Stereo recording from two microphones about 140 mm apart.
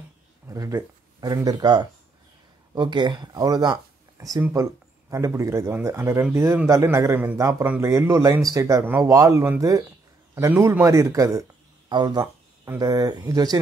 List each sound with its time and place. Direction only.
0.5 s a man's voice: 25° right (ahead or behind)